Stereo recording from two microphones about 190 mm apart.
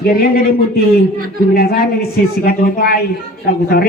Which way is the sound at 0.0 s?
50° left (ahead or behind).